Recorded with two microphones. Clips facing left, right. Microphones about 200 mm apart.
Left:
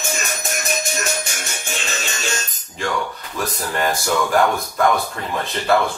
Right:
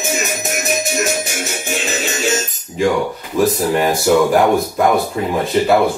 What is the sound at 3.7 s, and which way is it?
Speech, 15° right (ahead or behind).